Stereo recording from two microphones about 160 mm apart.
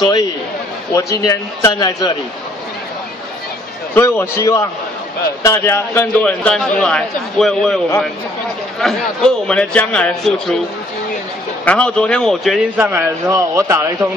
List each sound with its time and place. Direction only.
0.0 s a man's voice: 25° left (ahead or behind)
3.9 s a man's voice: 15° left (ahead or behind)
11.6 s speech: 5° left (ahead or behind)
12.9 s speech: 20° right (ahead or behind)